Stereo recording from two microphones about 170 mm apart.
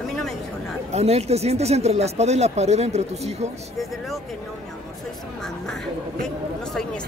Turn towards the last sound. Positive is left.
turn(degrees=0)  # may be behind; listen again after turning